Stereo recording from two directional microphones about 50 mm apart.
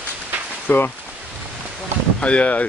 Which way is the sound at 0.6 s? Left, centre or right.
Left.